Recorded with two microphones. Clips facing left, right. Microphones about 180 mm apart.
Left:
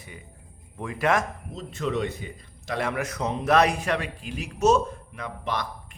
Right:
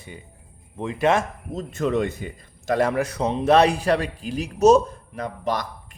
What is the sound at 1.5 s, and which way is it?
Speech, 50° right (ahead or behind).